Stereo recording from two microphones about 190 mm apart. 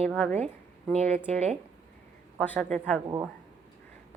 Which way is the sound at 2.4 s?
5° left (ahead or behind).